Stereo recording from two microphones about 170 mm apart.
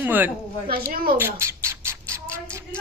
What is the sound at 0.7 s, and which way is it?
Speech, 60° right (ahead or behind).